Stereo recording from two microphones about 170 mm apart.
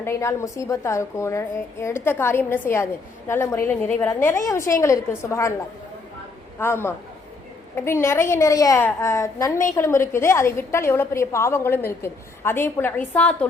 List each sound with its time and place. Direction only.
0.0 s a woman's voice: 15° left (ahead or behind)
6.6 s a woman's voice: 15° left (ahead or behind)